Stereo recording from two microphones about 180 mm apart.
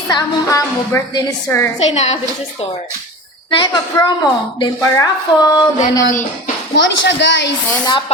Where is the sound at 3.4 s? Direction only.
25° left (ahead or behind).